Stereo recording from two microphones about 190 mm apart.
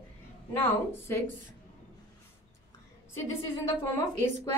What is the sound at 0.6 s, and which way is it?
Speech, 10° left (ahead or behind).